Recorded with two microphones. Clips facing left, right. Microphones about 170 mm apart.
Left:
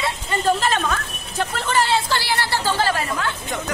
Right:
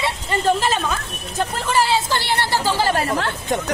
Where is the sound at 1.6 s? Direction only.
10° right (ahead or behind).